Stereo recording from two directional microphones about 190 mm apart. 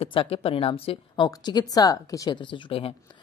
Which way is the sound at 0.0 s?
30° left (ahead or behind).